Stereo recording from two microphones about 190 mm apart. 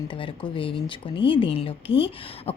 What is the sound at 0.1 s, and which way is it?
Speech, 25° left (ahead or behind).